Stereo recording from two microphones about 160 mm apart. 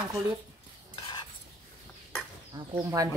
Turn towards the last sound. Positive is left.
turn(degrees=-15)  # may be behind; listen again after turning